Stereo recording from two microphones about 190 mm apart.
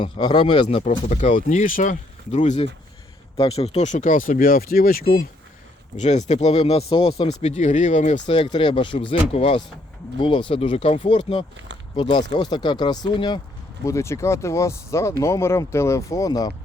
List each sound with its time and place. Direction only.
0.0 s speech: 20° left (ahead or behind)
0.8 s speech: 40° left (ahead or behind)
6.0 s speech: 35° left (ahead or behind)
8.2 s speech: 25° left (ahead or behind)